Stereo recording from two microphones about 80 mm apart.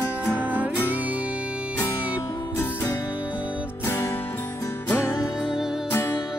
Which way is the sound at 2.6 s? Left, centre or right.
Left.